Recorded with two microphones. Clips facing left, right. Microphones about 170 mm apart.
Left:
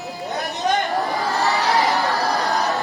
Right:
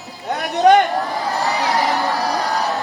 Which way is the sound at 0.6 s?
75° right (ahead or behind).